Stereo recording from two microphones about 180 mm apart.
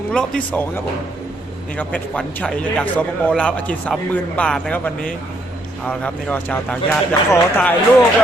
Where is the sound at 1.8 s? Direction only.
5° left (ahead or behind).